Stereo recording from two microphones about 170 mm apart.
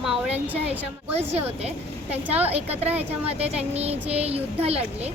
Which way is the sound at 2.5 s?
35° right (ahead or behind).